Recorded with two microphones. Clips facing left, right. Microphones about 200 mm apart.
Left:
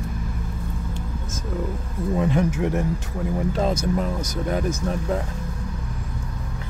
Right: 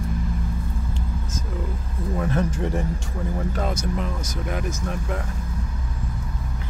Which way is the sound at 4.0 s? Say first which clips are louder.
Left 4 dB; 35° left (ahead or behind).